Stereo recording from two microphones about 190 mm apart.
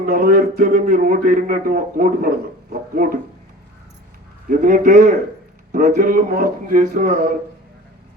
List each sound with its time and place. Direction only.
0.0 s speech: 50° right (ahead or behind)
4.4 s speech: 45° right (ahead or behind)